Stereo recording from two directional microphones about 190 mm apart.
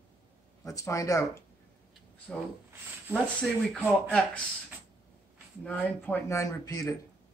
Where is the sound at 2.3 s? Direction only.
5° left (ahead or behind).